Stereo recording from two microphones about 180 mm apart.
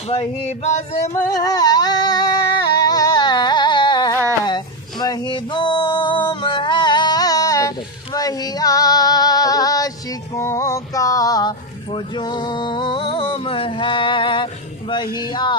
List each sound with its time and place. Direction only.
0.1 s male singing: 35° left (ahead or behind)
1.1 s singing: 20° left (ahead or behind)
4.5 s a sound: 25° left (ahead or behind)
15.1 s speech: 25° left (ahead or behind)